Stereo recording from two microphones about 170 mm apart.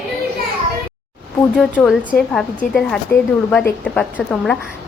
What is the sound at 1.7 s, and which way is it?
A woman's voice, 5° left (ahead or behind).